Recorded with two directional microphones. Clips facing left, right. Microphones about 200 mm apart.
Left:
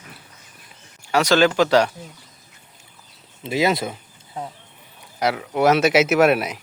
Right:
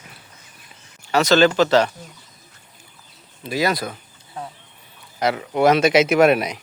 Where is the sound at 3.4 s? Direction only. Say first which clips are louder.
Left 1 dB; 25° left (ahead or behind).